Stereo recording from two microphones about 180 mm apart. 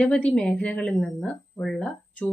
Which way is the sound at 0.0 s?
5° left (ahead or behind).